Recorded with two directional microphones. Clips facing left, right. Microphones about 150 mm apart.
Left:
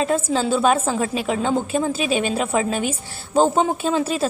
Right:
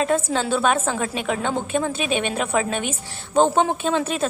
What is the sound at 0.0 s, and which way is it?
A woman's voice, 30° left (ahead or behind).